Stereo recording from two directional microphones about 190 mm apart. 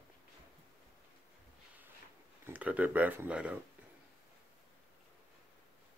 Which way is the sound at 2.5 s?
10° right (ahead or behind).